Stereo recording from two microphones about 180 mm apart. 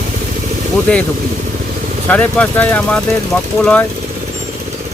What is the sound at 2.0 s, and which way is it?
Speech, 5° left (ahead or behind).